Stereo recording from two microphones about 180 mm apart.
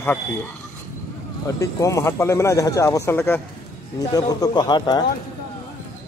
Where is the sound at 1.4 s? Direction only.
15° left (ahead or behind).